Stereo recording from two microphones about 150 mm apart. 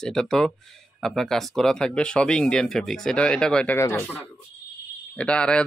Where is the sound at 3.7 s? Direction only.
20° left (ahead or behind).